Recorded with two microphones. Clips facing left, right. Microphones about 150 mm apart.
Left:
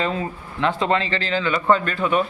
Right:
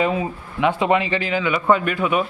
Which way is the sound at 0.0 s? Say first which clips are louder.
Right 3 dB; 10° right (ahead or behind).